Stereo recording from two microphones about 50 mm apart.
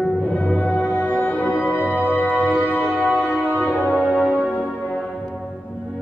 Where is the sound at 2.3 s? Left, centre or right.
Right.